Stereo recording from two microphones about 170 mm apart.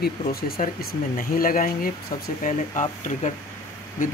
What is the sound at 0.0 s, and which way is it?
Speech, 65° left (ahead or behind).